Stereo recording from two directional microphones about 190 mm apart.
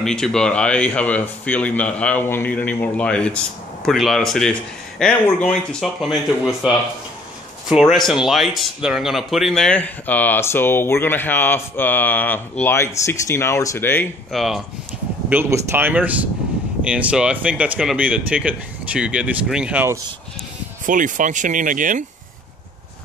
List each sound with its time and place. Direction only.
0.0 s speech: 5° left (ahead or behind)
7.7 s speech: centre (ahead or behind)
14.3 s speech: centre (ahead or behind)
20.8 s speech: 45° right (ahead or behind)